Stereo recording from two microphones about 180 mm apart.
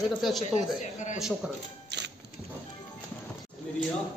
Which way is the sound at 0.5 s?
40° left (ahead or behind).